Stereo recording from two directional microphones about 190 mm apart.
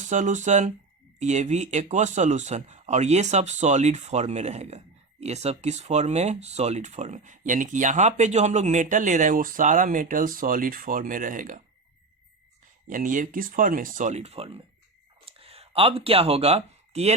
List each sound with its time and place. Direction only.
0.1 s speech: 40° right (ahead or behind)
12.9 s speech: 45° right (ahead or behind)
15.2 s a sound: 30° right (ahead or behind)